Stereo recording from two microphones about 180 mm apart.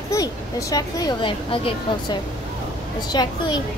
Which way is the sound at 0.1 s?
20° left (ahead or behind).